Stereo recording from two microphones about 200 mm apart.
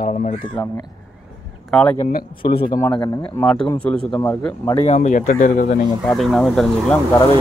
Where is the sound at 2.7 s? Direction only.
20° left (ahead or behind).